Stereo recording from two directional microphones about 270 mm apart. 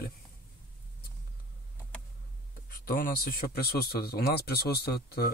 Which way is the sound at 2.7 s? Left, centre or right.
Left.